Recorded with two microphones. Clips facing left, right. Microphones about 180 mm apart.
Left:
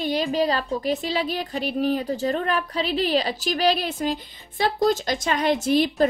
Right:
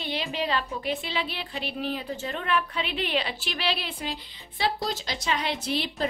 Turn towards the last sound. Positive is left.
turn(degrees=45)  # may be behind; listen again after turning